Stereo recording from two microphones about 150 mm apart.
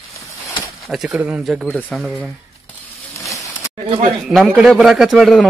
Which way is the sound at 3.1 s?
20° left (ahead or behind).